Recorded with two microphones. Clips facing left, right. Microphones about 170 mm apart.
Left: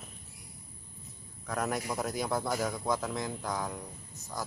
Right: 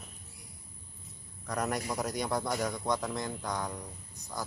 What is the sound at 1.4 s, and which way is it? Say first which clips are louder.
Speech: even; centre (ahead or behind).